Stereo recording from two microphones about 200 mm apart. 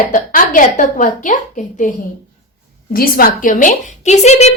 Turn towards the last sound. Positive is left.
turn(degrees=35)  # may be behind; listen again after turning